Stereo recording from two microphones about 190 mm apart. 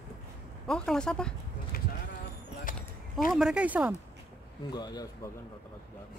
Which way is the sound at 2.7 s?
45° left (ahead or behind).